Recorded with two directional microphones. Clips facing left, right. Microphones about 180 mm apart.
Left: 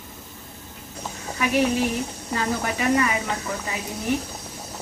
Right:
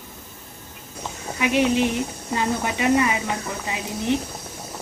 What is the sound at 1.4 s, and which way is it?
A woman's voice, 20° right (ahead or behind).